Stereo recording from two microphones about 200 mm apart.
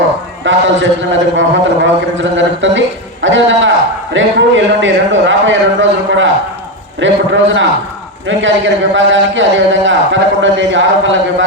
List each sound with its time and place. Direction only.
0.4 s a man's voice: 70° right (ahead or behind)